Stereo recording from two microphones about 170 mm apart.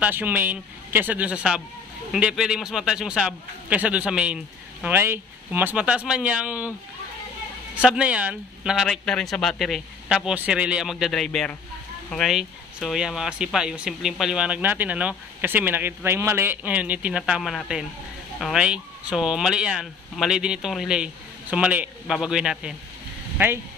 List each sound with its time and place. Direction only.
0.0 s speech: 10° right (ahead or behind)
7.7 s speech: 5° right (ahead or behind)